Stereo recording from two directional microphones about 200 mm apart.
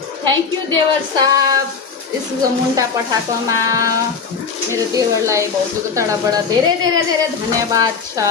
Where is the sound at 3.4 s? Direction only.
15° right (ahead or behind).